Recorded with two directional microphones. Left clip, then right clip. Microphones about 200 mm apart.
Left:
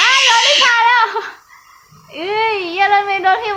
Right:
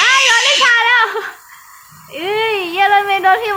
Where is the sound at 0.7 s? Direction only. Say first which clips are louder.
Even; 5° right (ahead or behind).